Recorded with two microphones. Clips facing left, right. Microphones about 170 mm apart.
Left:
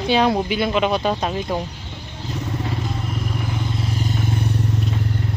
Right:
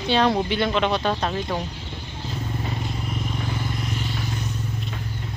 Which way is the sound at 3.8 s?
40° left (ahead or behind).